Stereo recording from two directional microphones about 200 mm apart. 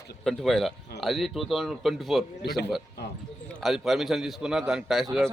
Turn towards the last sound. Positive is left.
turn(degrees=0)  # may be behind; listen again after turning